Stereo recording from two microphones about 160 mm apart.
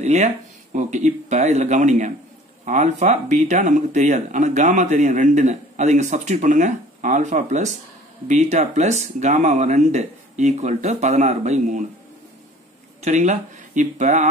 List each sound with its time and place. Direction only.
0.0 s speech: 45° right (ahead or behind)
13.0 s speech: 45° right (ahead or behind)